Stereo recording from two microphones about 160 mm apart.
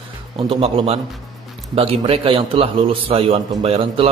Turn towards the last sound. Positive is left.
turn(degrees=-40)  # may be behind; listen again after turning